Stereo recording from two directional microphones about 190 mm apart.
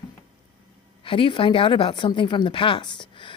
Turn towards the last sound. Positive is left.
turn(degrees=25)  # may be behind; listen again after turning